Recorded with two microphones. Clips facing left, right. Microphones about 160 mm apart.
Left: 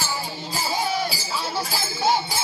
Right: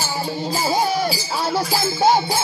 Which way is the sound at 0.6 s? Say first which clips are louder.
Right 5 dB; 45° right (ahead or behind).